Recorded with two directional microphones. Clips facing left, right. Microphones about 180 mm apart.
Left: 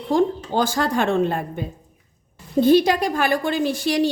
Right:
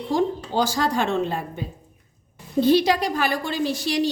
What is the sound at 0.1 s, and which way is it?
A woman's voice, 55° left (ahead or behind).